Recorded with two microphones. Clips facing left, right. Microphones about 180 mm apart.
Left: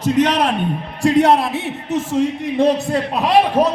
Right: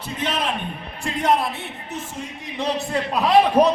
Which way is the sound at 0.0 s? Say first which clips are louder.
Left 10 dB; 80° left.